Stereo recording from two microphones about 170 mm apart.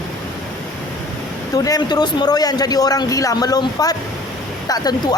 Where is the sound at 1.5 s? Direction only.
20° left (ahead or behind).